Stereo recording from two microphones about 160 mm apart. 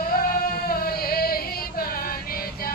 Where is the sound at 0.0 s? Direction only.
65° left (ahead or behind).